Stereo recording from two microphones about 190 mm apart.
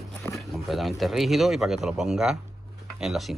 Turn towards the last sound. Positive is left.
turn(degrees=0)  # may be behind; listen again after turning